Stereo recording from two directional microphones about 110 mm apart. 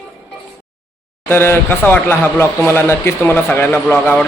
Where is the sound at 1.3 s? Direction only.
20° left (ahead or behind).